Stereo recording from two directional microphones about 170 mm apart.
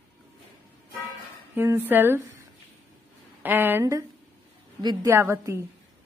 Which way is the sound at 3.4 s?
10° right (ahead or behind).